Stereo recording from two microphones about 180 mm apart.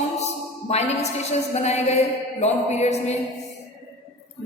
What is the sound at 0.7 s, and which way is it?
A woman's voice, 40° left (ahead or behind).